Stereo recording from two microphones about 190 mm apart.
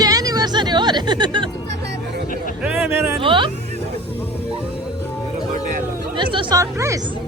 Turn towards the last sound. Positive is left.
turn(degrees=-15)  # may be behind; listen again after turning